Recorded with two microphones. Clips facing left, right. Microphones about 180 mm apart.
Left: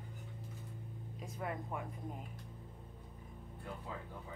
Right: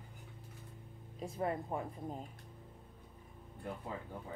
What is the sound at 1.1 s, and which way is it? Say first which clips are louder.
Speech: right 6 dB; 30° right (ahead or behind).